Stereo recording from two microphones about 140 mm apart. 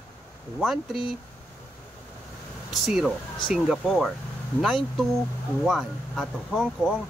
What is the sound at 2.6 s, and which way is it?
Speech, centre (ahead or behind).